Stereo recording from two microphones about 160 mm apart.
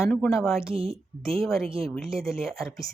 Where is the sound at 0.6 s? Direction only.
35° right (ahead or behind).